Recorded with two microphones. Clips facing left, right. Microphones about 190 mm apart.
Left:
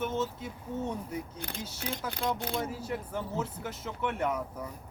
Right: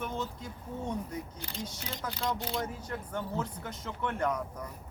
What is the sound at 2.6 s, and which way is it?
Speech, 10° left (ahead or behind).